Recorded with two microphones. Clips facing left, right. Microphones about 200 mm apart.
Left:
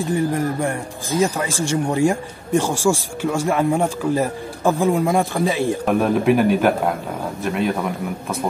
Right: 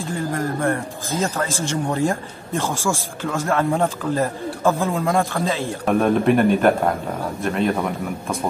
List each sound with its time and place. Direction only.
0.0 s speech: 15° left (ahead or behind)
5.9 s a man's voice: 5° left (ahead or behind)